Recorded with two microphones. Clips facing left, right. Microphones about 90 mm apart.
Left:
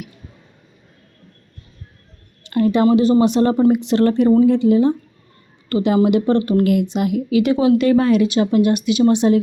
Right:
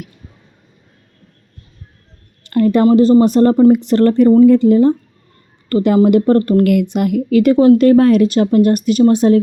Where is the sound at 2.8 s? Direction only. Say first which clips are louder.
Right 5 dB; 35° right (ahead or behind).